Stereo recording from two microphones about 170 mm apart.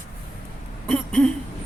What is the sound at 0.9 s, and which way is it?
Speech, 5° left (ahead or behind).